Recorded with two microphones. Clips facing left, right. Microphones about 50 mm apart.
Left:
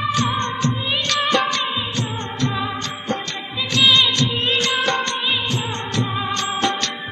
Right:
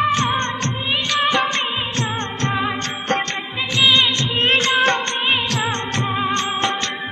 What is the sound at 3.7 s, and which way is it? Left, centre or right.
Music of bollywood, right.